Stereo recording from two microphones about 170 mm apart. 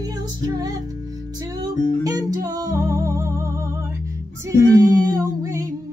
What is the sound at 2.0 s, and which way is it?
Music, 20° right (ahead or behind).